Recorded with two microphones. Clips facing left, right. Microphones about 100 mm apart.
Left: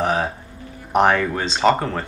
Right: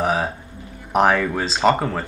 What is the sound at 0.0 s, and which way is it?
Music, 5° right (ahead or behind).